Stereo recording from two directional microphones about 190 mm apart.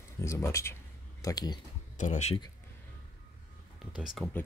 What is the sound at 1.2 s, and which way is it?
Speech, 20° left (ahead or behind).